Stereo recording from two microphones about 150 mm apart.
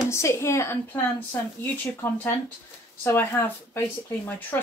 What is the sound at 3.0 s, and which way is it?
Speech, 15° left (ahead or behind).